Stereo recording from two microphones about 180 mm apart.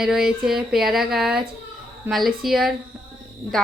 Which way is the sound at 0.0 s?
5° right (ahead or behind).